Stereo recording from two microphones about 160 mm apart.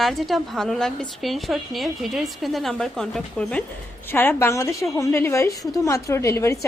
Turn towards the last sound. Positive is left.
turn(degrees=20)  # may be behind; listen again after turning